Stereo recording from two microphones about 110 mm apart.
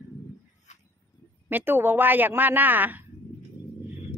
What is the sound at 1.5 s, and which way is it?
A woman's voice, 20° right (ahead or behind).